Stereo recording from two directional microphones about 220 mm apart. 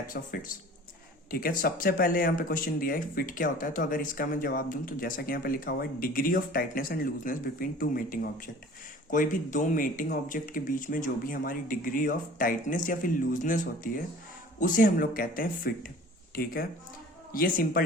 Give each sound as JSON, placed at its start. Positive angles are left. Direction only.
{"t": 0.1, "sound": "speech", "side_deg": 40}